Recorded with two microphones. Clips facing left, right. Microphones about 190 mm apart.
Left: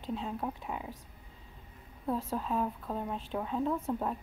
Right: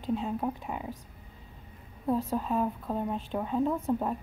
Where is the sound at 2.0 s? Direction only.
10° right (ahead or behind).